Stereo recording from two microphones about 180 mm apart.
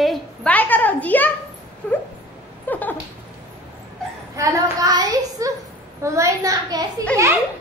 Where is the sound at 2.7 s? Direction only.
10° left (ahead or behind).